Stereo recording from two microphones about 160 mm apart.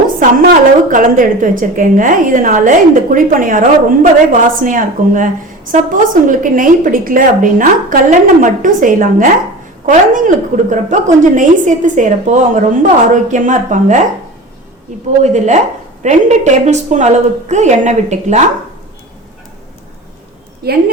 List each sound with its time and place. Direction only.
0.2 s a woman's voice: 60° right (ahead or behind)
15.2 s a woman's voice: 45° right (ahead or behind)
20.6 s a woman's voice: 80° right